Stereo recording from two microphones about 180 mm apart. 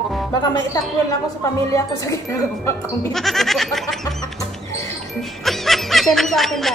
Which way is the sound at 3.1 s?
Centre (ahead or behind).